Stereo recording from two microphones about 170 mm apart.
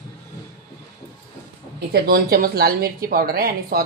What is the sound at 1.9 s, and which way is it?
A woman's voice, 65° right (ahead or behind).